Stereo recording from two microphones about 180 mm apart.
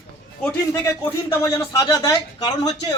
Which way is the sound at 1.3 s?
15° left (ahead or behind).